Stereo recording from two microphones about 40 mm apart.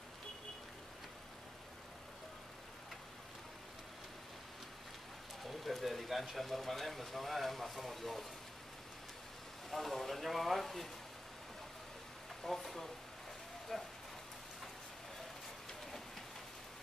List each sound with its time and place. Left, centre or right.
5.4 s speech: centre
9.7 s speech: centre
12.4 s speech: centre
13.7 s rain: centre